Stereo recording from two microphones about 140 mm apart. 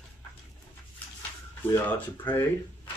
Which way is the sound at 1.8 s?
15° left (ahead or behind).